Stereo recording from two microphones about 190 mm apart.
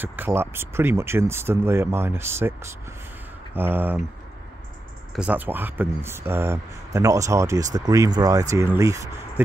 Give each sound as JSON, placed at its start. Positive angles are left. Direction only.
{"t": 0.0, "sound": "speech", "side_deg": -10}
{"t": 5.1, "sound": "speech", "side_deg": -5}